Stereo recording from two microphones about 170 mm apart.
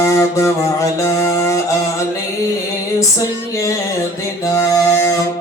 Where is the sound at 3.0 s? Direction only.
20° left (ahead or behind).